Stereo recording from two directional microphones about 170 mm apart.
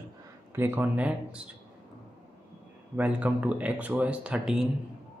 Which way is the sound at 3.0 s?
10° right (ahead or behind).